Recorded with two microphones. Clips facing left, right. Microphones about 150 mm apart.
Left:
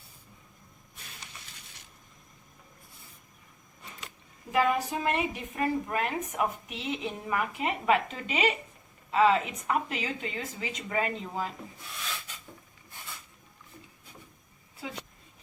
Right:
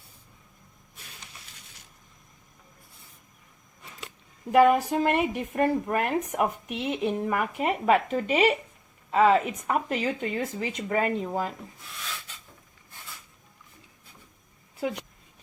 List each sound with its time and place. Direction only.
4.5 s a woman's voice: 55° right (ahead or behind)